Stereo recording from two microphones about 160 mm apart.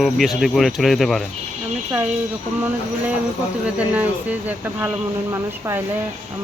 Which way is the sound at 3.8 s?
10° right (ahead or behind).